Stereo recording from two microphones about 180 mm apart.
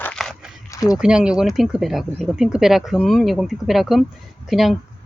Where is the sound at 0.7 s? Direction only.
20° left (ahead or behind).